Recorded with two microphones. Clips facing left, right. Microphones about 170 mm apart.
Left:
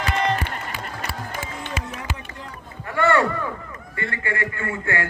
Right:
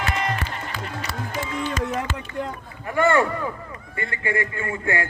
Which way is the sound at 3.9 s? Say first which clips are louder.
Right 2 dB; 20° right (ahead or behind).